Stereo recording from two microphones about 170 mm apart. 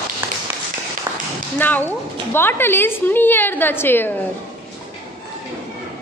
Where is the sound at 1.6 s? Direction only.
10° left (ahead or behind).